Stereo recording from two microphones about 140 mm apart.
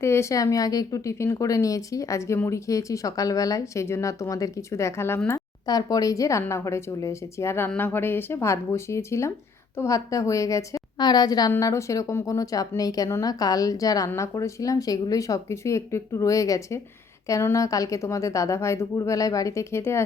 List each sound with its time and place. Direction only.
0.0 s speech: 20° left (ahead or behind)